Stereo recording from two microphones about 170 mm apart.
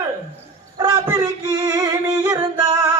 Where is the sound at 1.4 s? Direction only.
20° right (ahead or behind).